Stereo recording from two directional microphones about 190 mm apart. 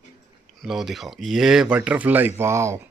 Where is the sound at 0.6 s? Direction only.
Centre (ahead or behind).